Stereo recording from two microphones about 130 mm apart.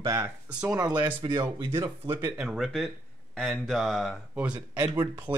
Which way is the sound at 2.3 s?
5° right (ahead or behind).